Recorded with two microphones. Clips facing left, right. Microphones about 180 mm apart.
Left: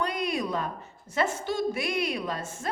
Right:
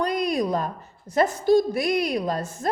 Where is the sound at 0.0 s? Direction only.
40° right (ahead or behind).